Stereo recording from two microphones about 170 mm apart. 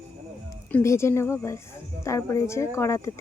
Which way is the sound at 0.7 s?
15° left (ahead or behind).